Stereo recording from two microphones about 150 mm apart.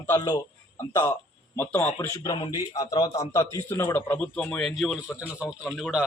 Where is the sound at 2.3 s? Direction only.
25° left (ahead or behind).